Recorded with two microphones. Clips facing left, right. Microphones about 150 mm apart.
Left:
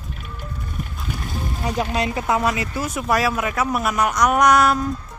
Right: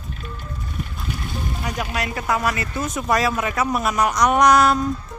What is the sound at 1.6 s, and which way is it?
Speech, 30° left (ahead or behind).